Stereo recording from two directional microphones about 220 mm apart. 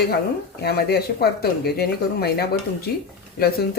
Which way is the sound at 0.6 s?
45° left (ahead or behind).